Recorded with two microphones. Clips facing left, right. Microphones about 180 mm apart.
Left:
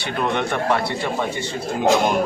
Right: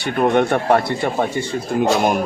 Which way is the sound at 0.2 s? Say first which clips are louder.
Right 6 dB; 50° right (ahead or behind).